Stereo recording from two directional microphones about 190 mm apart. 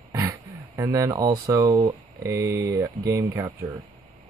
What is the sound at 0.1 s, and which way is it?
Speech, 15° right (ahead or behind).